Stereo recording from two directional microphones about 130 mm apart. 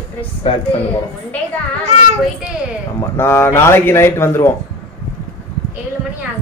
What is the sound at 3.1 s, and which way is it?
Speech, 20° left (ahead or behind).